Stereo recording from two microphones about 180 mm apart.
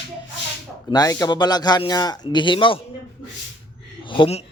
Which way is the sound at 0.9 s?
20° left (ahead or behind).